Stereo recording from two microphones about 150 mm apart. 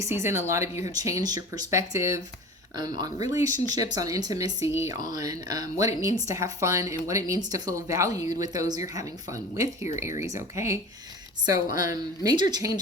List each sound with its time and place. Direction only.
0.0 s speech: 15° right (ahead or behind)